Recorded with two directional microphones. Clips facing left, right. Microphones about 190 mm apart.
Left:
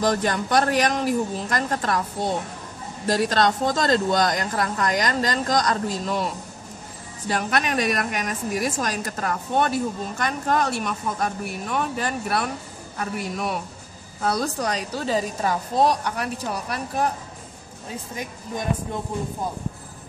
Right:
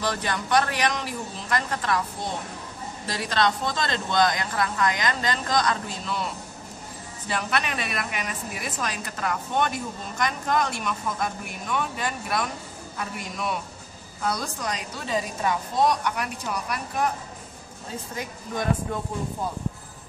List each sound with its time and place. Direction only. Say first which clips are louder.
0.0 s speech: left 6 dB; 45° left (ahead or behind)
3.1 s a woman's voice: left 5 dB; 45° left (ahead or behind)
7.2 s a woman's voice: left 4 dB; 45° left (ahead or behind)
14.6 s a woman's voice: left 6 dB; 35° left (ahead or behind)